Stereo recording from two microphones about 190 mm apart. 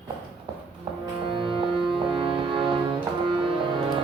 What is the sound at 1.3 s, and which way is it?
Music, 25° right (ahead or behind).